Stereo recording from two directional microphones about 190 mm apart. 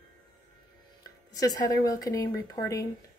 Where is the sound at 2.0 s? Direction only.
20° left (ahead or behind).